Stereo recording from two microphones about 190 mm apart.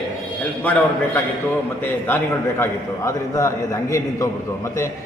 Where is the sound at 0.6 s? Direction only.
10° left (ahead or behind).